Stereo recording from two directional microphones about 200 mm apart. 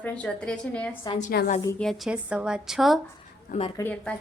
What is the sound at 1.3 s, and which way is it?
Speech, 50° left (ahead or behind).